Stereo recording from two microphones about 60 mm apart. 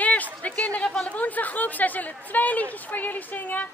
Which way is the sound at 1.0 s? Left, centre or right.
Left.